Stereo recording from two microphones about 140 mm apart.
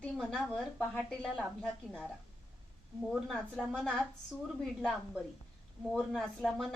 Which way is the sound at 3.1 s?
5° right (ahead or behind).